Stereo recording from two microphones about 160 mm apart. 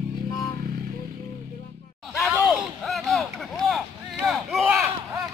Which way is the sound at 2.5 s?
Centre (ahead or behind).